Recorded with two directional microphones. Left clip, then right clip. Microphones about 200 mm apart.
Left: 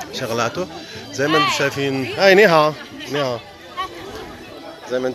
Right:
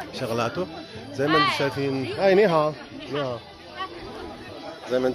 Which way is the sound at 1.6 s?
10° left (ahead or behind).